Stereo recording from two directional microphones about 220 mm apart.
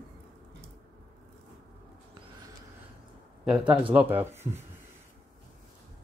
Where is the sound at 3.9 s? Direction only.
10° right (ahead or behind).